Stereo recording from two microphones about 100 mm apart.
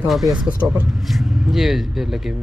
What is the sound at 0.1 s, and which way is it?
Speech, 5° right (ahead or behind).